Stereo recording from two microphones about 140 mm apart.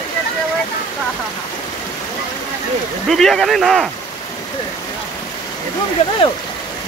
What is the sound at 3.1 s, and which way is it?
Speech, 5° left (ahead or behind).